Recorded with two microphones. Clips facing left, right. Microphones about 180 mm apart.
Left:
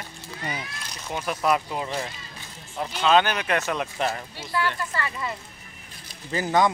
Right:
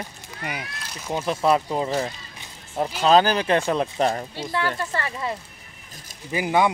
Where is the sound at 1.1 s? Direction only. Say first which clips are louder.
Right 3 dB; 30° right (ahead or behind).